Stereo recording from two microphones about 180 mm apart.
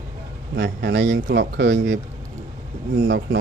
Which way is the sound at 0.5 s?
70° right (ahead or behind).